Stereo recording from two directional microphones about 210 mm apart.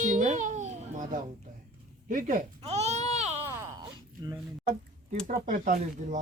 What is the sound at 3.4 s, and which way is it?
Wail, 10° right (ahead or behind).